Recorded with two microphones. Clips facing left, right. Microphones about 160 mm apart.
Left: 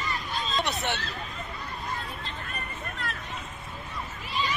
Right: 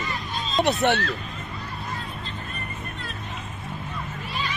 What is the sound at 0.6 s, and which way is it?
Speech, 55° right (ahead or behind).